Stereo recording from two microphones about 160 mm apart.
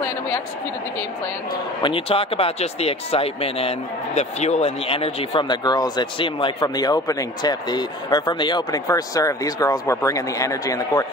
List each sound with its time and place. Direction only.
1.8 s speech: 35° left (ahead or behind)